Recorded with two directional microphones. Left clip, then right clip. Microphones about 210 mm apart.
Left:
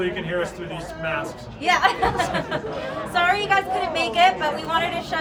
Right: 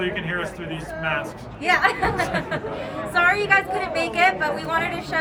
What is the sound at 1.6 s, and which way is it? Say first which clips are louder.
A woman's voice: even; 15° left (ahead or behind).